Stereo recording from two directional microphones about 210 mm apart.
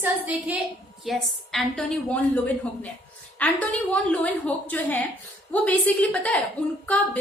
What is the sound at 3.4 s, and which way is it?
A woman's voice, 5° left (ahead or behind).